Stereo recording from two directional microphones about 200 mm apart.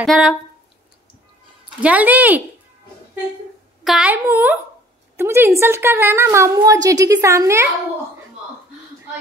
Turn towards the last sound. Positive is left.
turn(degrees=-15)  # may be behind; listen again after turning